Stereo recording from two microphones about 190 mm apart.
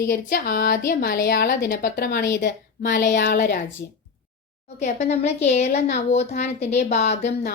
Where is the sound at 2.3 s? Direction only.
45° left (ahead or behind).